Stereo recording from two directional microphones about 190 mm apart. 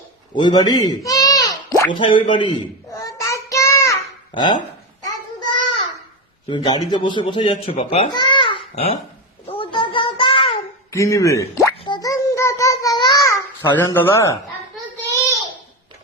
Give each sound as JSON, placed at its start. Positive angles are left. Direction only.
{"t": 0.3, "sound": "a sound", "side_deg": 25}
{"t": 6.5, "sound": "speech", "side_deg": 20}
{"t": 8.1, "sound": "babbling", "side_deg": 25}
{"t": 9.5, "sound": "child singing", "side_deg": 25}
{"t": 10.9, "sound": "plop", "side_deg": 15}